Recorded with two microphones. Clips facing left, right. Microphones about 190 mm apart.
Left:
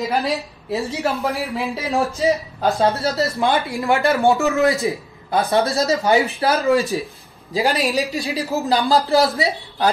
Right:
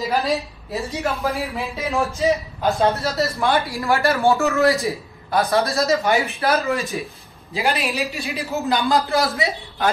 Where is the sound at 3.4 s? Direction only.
25° left (ahead or behind).